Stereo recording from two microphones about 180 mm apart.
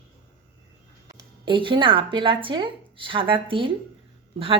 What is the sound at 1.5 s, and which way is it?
A woman's voice, 25° right (ahead or behind).